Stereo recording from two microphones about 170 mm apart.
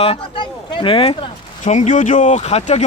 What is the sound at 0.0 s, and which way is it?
Speech, 30° left (ahead or behind).